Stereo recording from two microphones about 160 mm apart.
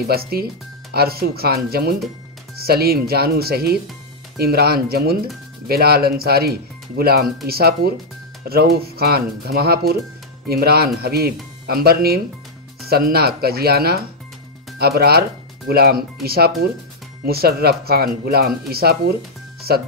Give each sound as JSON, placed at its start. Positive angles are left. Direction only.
{"t": 0.0, "sound": "speech", "side_deg": -75}